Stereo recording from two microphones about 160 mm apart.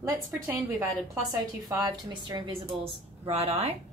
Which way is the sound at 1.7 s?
25° right (ahead or behind).